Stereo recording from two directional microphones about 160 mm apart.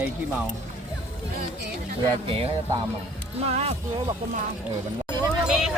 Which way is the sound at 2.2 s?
35° right (ahead or behind).